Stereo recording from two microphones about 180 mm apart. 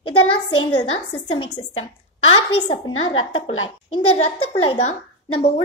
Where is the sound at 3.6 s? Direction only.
30° left (ahead or behind).